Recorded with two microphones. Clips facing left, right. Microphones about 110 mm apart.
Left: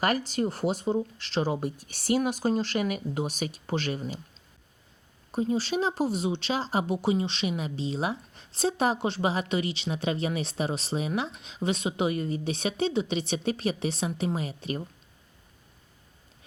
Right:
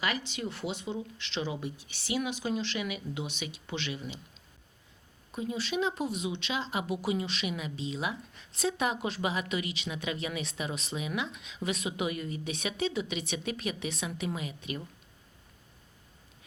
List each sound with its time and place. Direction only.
0.0 s speech: 45° left (ahead or behind)
5.3 s speech: 35° left (ahead or behind)